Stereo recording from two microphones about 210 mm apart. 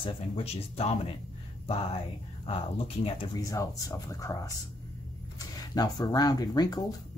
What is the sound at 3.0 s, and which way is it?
Speech, 20° left (ahead or behind).